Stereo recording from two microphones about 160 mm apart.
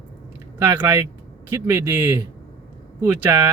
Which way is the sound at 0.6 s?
15° right (ahead or behind).